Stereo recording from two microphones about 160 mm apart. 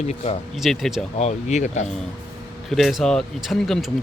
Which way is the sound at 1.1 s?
45° left (ahead or behind).